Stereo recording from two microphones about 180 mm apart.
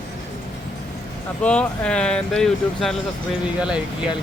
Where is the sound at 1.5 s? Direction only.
5° left (ahead or behind).